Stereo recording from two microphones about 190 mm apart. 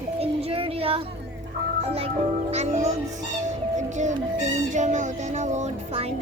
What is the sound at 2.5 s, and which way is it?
Music, 35° right (ahead or behind).